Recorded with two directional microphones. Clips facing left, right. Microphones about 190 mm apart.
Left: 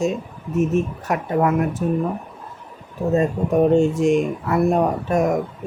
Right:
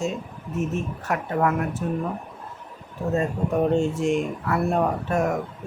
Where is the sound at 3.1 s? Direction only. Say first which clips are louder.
Left 5 dB; 15° left (ahead or behind).